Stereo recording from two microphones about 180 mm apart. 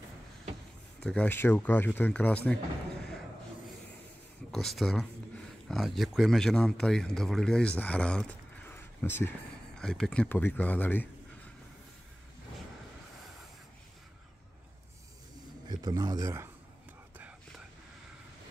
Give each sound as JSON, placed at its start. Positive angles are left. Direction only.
{"t": 1.0, "sound": "speech", "side_deg": 5}
{"t": 4.5, "sound": "speech", "side_deg": 0}
{"t": 15.7, "sound": "speech", "side_deg": -20}